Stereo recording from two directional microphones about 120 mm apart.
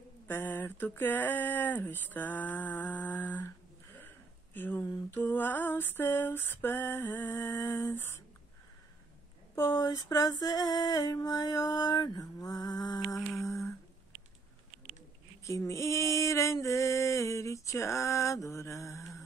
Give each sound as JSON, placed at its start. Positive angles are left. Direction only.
{"t": 0.3, "sound": "speech", "side_deg": 15}
{"t": 5.2, "sound": "speech", "side_deg": 15}
{"t": 7.7, "sound": "mantra", "side_deg": 20}
{"t": 9.6, "sound": "a sound", "side_deg": 30}
{"t": 13.4, "sound": "humming", "side_deg": 25}
{"t": 15.4, "sound": "mantra", "side_deg": 25}